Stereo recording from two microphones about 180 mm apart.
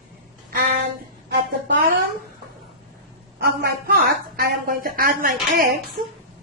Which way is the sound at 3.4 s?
60° right (ahead or behind).